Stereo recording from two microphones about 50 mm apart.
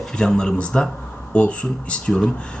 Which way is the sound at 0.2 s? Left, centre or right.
Centre.